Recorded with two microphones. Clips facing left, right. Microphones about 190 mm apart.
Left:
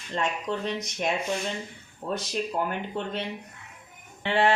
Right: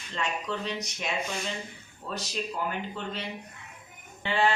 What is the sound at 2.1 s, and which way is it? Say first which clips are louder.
Speech: left 4 dB; 55° left (ahead or behind).